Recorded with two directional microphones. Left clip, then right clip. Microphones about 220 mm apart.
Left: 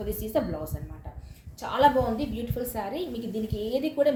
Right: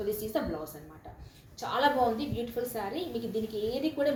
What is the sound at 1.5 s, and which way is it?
Speech, 50° left (ahead or behind).